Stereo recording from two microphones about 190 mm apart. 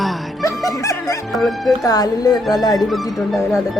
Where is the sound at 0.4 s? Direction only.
15° left (ahead or behind).